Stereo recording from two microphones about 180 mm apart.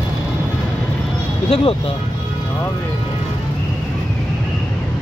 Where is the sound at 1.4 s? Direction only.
30° left (ahead or behind).